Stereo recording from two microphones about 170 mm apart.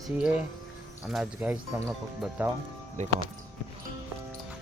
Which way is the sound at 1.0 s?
Centre (ahead or behind).